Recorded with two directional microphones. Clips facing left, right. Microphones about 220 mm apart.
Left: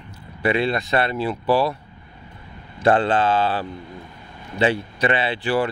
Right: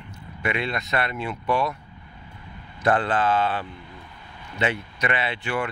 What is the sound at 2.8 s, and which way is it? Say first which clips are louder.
Speech: left 4 dB; 30° left (ahead or behind).